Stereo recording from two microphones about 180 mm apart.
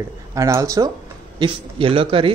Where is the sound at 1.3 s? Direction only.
30° right (ahead or behind).